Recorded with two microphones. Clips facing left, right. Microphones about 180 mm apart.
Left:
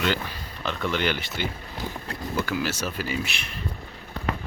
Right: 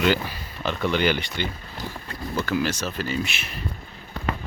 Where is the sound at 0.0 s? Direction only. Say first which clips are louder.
Right 4 dB; 5° right (ahead or behind); by 3.2 s 10° left (ahead or behind).